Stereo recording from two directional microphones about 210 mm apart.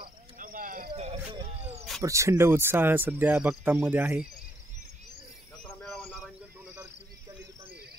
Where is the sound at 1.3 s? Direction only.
30° right (ahead or behind).